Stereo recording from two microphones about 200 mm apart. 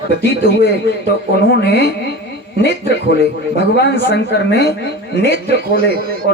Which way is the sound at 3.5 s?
55° left (ahead or behind).